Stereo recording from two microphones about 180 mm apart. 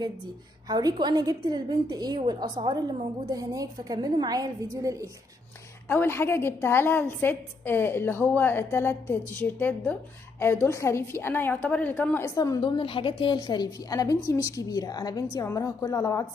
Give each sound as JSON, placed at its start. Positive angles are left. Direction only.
{"t": 0.7, "sound": "a woman's voice", "side_deg": -25}
{"t": 5.9, "sound": "a woman's voice", "side_deg": 10}